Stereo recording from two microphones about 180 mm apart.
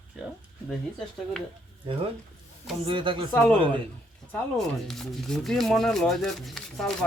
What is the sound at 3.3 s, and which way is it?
Speech, 10° left (ahead or behind).